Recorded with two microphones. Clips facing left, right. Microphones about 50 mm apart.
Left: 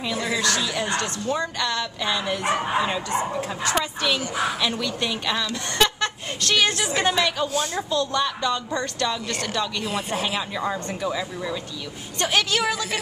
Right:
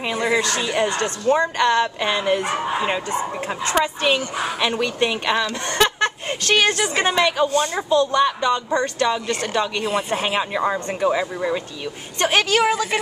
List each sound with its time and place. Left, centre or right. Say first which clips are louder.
0.1 s a woman's voice: right 4 dB; right
7.4 s speech: right 5 dB; centre
7.9 s speech: right 8 dB; right
9.8 s speech: right 5 dB; centre
10.2 s speech: right 5 dB; right